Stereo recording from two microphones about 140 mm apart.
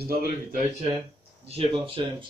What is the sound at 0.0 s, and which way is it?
Speech, 90° right.